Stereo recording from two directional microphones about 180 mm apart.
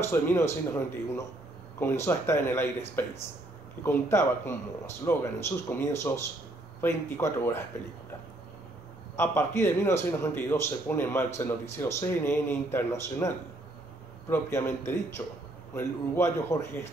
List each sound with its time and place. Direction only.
0.0 s a man's voice: 15° left (ahead or behind)
9.1 s a man's voice: 10° left (ahead or behind)
14.3 s a man's voice: 10° left (ahead or behind)